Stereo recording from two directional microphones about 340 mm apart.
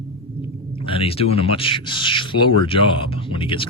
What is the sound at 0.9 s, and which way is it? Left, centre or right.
Speech, centre.